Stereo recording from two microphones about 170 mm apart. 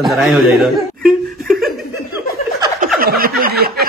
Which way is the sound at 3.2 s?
60° right (ahead or behind).